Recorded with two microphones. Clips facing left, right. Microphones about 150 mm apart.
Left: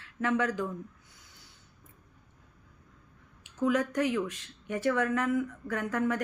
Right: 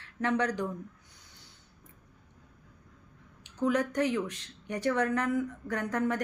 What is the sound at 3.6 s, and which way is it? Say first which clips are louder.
Speech: even; 20° right (ahead or behind).